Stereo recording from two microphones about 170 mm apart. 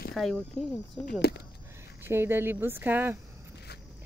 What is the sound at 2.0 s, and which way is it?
A woman's voice, 15° right (ahead or behind).